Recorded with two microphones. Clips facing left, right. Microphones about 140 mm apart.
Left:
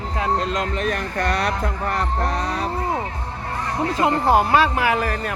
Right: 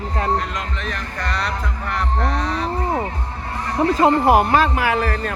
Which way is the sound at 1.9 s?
40° left (ahead or behind).